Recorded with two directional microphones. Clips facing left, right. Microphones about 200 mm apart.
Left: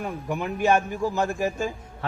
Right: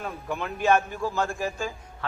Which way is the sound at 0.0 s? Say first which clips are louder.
Left 3 dB; 15° left (ahead or behind).